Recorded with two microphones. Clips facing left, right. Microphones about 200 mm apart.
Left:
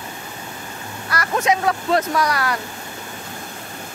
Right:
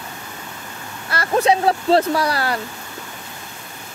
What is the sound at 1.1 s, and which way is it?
Speech, 30° right (ahead or behind).